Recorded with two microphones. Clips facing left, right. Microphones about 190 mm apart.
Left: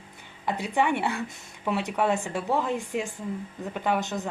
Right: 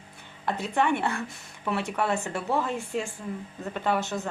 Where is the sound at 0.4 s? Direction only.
15° left (ahead or behind).